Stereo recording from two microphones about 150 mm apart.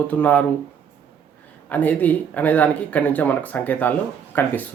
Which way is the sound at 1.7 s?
10° left (ahead or behind).